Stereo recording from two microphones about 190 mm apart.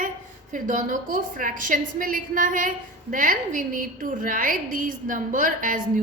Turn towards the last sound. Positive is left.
turn(degrees=-45)  # may be behind; listen again after turning